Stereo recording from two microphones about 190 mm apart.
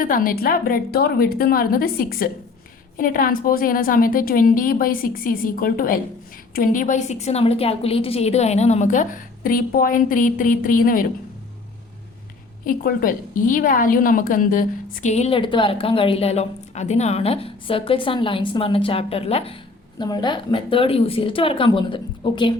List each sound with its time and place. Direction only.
0.0 s a woman's voice: 45° left (ahead or behind)
12.6 s a woman's voice: 50° left (ahead or behind); by 22.5 s 25° left (ahead or behind)